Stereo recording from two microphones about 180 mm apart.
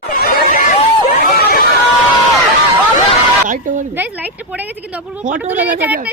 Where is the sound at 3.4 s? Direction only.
45° right (ahead or behind).